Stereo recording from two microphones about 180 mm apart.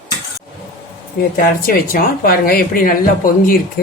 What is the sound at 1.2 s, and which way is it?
Speech, 50° left (ahead or behind).